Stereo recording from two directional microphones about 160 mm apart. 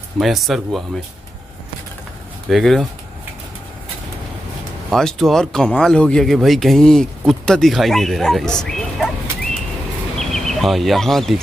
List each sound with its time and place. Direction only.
0.2 s speech: centre (ahead or behind)
2.5 s speech: centre (ahead or behind)
4.9 s speech: centre (ahead or behind)
10.1 s a sound: centre (ahead or behind)